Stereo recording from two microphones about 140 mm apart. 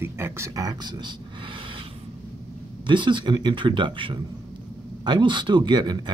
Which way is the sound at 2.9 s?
35° right (ahead or behind).